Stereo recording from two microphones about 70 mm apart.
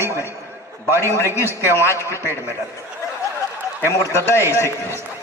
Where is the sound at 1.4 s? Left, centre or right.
Right.